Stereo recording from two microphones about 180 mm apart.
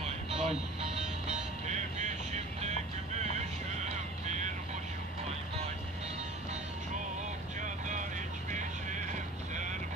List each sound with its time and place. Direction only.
0.0 s music: 35° right (ahead or behind)